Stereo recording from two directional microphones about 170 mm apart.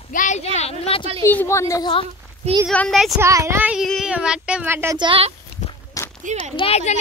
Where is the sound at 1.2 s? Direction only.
15° left (ahead or behind).